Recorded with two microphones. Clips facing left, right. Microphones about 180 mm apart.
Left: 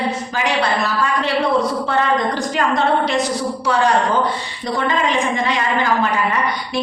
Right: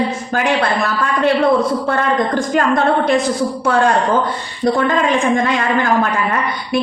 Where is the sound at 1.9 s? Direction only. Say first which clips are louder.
Right 2 dB; 50° right (ahead or behind).